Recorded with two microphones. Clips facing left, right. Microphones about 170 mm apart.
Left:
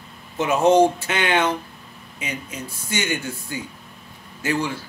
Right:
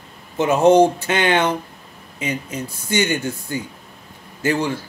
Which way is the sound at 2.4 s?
40° right (ahead or behind).